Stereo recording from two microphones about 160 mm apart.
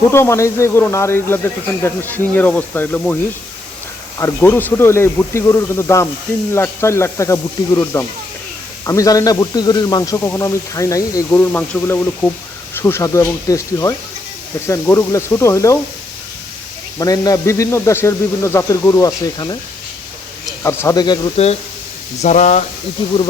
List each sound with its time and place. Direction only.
0.1 s speech: 15° left (ahead or behind)
4.2 s a man's voice: 15° left (ahead or behind)
11.3 s a man's voice: 10° left (ahead or behind)
17.0 s a man's voice: 20° left (ahead or behind)
20.7 s a man's voice: 20° left (ahead or behind)
21.3 s speech: 40° left (ahead or behind)